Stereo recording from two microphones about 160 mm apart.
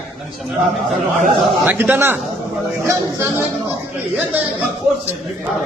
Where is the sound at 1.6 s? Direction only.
10° right (ahead or behind).